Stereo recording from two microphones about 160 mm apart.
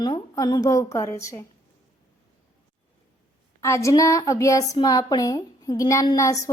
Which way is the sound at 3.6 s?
20° left (ahead or behind).